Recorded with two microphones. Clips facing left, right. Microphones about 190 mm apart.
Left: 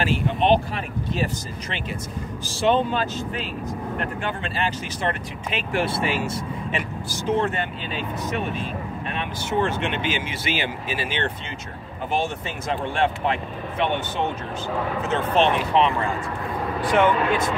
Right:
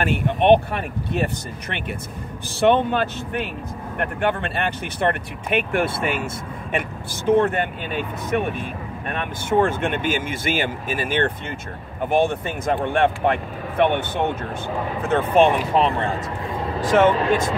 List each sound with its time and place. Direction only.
0.0 s speech: 60° right (ahead or behind)
15.5 s speech: 40° right (ahead or behind)